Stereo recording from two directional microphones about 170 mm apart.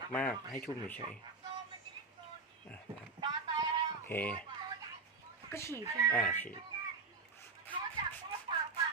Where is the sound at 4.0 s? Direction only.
10° left (ahead or behind).